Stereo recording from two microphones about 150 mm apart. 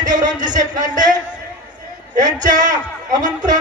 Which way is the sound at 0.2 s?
60° right (ahead or behind).